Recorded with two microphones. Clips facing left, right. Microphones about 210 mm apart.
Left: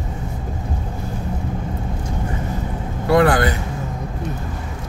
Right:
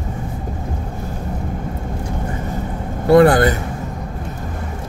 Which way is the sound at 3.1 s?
35° right (ahead or behind).